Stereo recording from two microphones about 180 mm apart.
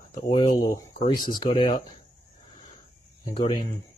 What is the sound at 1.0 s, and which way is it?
Speech, 25° left (ahead or behind).